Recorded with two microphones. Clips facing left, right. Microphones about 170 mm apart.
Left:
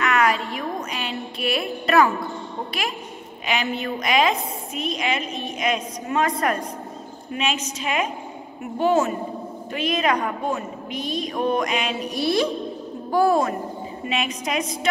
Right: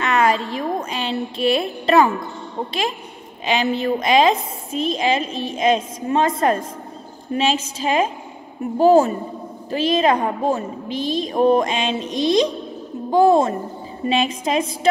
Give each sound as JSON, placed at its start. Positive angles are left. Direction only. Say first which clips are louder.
{"t": 0.0, "sound": "a sound", "louder": "right 3 dB", "side_deg": -25}
{"t": 0.5, "sound": "a woman's voice", "louder": "right 4 dB", "side_deg": -30}
{"t": 3.7, "sound": "a woman's voice", "louder": "right 6 dB", "side_deg": -30}